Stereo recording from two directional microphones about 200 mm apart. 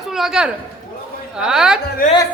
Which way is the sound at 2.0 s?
45° left (ahead or behind).